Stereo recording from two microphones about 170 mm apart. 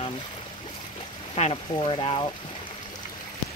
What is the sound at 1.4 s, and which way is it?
Speech, 35° left (ahead or behind).